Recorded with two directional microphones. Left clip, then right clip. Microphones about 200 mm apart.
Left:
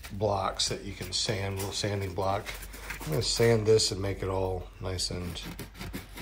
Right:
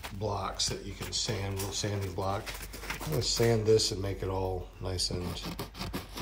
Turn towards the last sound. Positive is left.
turn(degrees=0)  # may be behind; listen again after turning